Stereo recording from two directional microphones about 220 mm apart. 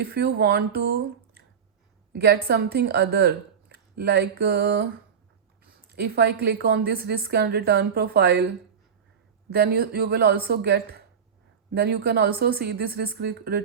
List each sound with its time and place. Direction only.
0.0 s a woman's voice: 45° right (ahead or behind)
5.9 s a woman's voice: 45° right (ahead or behind)
9.5 s a woman's voice: 45° right (ahead or behind)